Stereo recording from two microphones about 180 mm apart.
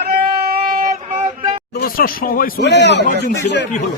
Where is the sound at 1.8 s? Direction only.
50° left (ahead or behind); by 3.7 s 70° left (ahead or behind).